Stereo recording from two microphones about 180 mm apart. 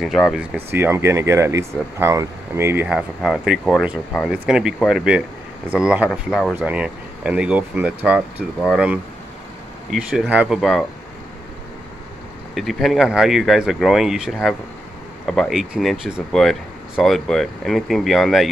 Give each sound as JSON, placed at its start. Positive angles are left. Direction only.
{"t": 0.0, "sound": "speech", "side_deg": 0}
{"t": 0.6, "sound": "speech", "side_deg": -10}
{"t": 3.2, "sound": "speech", "side_deg": 0}
{"t": 12.5, "sound": "speech", "side_deg": 0}